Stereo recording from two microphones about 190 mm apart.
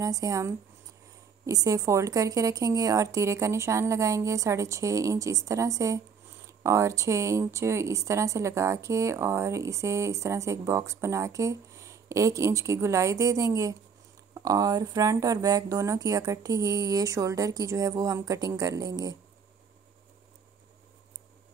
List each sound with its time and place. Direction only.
0.0 s a woman's voice: 15° right (ahead or behind)